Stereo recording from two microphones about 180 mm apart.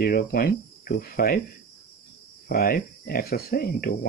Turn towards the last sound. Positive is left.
turn(degrees=55)  # may be behind; listen again after turning